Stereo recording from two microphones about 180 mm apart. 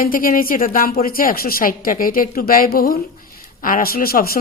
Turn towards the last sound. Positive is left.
turn(degrees=55)  # may be behind; listen again after turning